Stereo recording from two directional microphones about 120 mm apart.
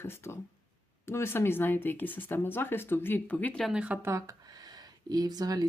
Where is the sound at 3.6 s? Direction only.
10° right (ahead or behind).